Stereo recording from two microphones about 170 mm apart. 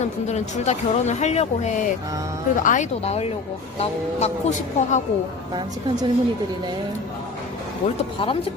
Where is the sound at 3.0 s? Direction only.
35° left (ahead or behind).